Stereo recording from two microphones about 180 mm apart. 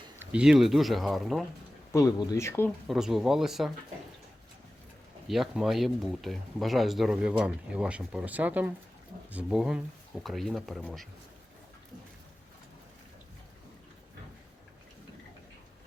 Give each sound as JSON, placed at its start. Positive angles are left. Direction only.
{"t": 0.2, "sound": "speech", "side_deg": -5}
{"t": 1.9, "sound": "speech", "side_deg": 15}
{"t": 2.8, "sound": "speech", "side_deg": 0}
{"t": 5.3, "sound": "speech", "side_deg": 0}